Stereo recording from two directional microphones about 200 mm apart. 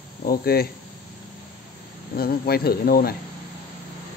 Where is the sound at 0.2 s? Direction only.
50° left (ahead or behind).